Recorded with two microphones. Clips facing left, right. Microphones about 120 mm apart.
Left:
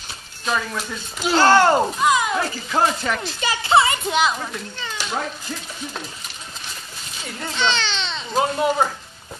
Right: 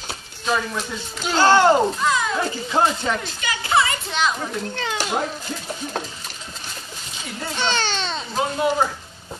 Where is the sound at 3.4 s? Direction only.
25° left (ahead or behind).